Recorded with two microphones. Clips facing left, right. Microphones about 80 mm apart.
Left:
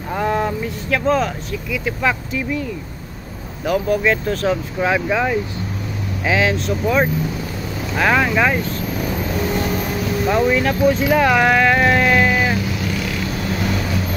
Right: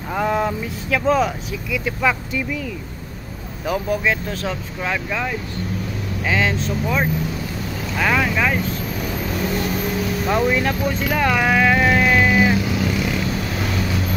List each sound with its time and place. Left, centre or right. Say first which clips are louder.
0.1 s speech: left 1 dB; centre
3.6 s speech: left 4 dB; centre
4.0 s speech: left 4 dB; centre
4.7 s speech: left 4 dB; centre
10.2 s speech: left 3 dB; centre
10.7 s speech: left 6 dB; centre